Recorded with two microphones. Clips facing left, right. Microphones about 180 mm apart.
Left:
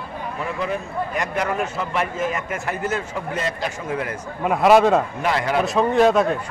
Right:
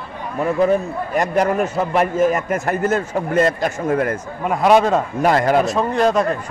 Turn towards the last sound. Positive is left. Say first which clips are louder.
# left 1 dB
turn(degrees=0)  # may be behind; listen again after turning